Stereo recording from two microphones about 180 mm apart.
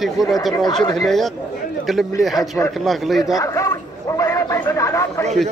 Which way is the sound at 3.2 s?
20° left (ahead or behind).